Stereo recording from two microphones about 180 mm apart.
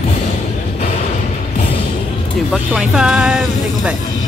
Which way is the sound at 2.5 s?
5° right (ahead or behind).